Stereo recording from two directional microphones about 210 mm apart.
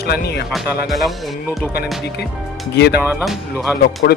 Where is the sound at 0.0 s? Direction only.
50° left (ahead or behind).